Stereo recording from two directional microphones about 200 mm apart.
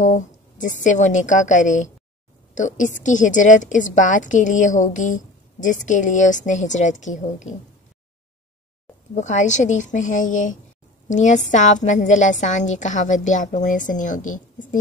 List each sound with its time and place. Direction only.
0.0 s a woman's voice: 40° left (ahead or behind)
9.1 s a woman's voice: 35° left (ahead or behind)